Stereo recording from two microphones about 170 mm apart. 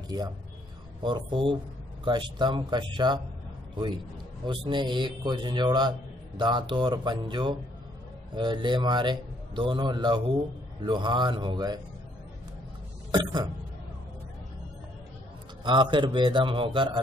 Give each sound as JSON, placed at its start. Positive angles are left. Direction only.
{"t": 1.0, "sound": "a man's voice", "side_deg": -30}
{"t": 13.1, "sound": "a man's voice", "side_deg": -25}
{"t": 15.6, "sound": "a man's voice", "side_deg": -25}